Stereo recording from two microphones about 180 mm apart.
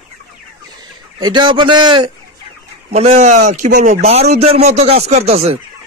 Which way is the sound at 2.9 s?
35° right (ahead or behind).